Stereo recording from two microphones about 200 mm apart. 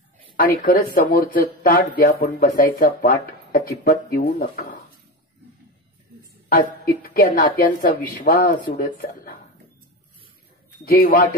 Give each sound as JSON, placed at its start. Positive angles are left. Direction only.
{"t": 0.4, "sound": "speech", "side_deg": 45}
{"t": 6.5, "sound": "speech", "side_deg": 45}
{"t": 10.9, "sound": "speech", "side_deg": 50}